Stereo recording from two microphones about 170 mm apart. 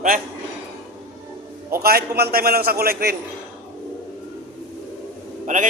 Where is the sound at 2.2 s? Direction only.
65° right (ahead or behind).